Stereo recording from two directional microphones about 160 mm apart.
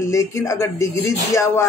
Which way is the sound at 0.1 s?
20° left (ahead or behind).